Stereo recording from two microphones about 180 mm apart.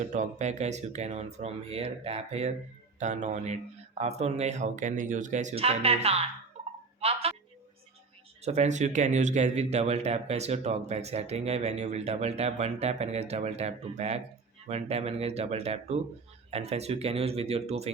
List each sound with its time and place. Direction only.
0.0 s speech: 45° right (ahead or behind)
6.5 s a sound: 35° right (ahead or behind)
8.4 s speech: 40° right (ahead or behind)